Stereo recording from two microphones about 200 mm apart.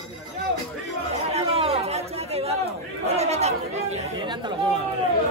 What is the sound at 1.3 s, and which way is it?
Chatter, 30° right (ahead or behind).